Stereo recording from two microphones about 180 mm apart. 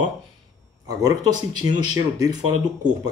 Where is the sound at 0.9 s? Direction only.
20° right (ahead or behind).